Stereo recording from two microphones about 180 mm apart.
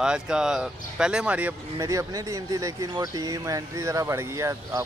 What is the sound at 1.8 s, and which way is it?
Speech, 20° right (ahead or behind).